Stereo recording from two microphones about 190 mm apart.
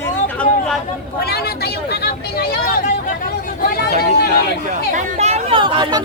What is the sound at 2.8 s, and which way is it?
Chatter, 45° left (ahead or behind).